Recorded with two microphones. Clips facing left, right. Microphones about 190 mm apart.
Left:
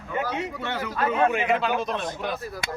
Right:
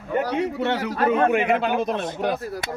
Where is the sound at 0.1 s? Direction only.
60° right (ahead or behind).